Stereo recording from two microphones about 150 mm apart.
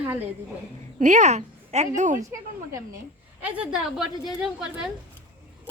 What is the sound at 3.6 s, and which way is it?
A woman's voice, 5° right (ahead or behind).